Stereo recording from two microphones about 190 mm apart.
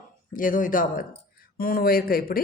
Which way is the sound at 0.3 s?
45° left (ahead or behind).